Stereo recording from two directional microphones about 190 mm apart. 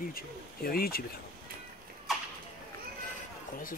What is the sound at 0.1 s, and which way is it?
Speech, 50° left (ahead or behind).